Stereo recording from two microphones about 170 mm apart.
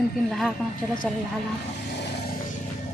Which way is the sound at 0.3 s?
Centre (ahead or behind).